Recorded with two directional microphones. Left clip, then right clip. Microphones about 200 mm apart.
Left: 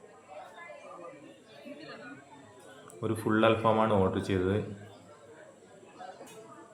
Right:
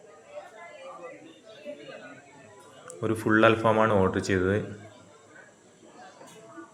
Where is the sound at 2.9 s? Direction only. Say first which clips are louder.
Right 6 dB; 10° right (ahead or behind).